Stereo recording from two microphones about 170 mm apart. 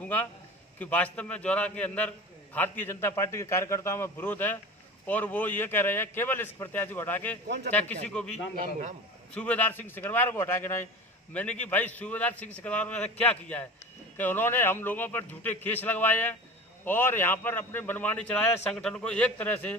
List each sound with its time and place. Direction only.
0.0 s a man's voice: 10° left (ahead or behind)
7.4 s a man's voice: 80° right
7.7 s a man's voice: 5° left (ahead or behind)